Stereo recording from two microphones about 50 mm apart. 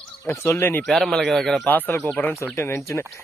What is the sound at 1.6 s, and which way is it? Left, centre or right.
Speech, left.